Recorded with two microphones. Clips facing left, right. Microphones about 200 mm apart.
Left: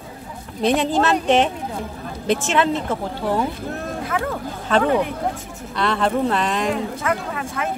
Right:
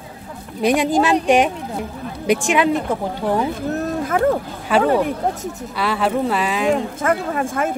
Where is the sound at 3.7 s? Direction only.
45° right (ahead or behind).